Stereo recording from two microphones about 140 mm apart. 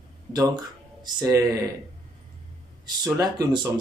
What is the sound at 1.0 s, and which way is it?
Speech, 25° right (ahead or behind).